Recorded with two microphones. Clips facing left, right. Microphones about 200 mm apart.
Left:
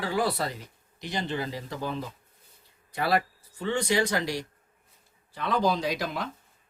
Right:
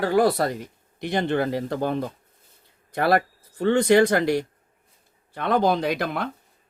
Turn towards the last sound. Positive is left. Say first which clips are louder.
# right 5 dB
turn(degrees=-60)  # may be behind; listen again after turning